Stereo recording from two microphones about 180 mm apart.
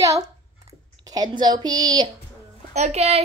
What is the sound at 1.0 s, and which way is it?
A woman's voice, 20° right (ahead or behind).